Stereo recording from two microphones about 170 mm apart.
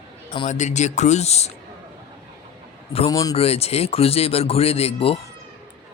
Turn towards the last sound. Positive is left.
turn(degrees=35)  # may be behind; listen again after turning